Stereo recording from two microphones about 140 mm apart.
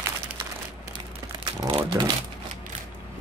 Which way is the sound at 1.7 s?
30° right (ahead or behind).